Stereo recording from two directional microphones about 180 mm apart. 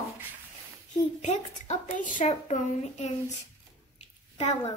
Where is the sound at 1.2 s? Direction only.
40° left (ahead or behind).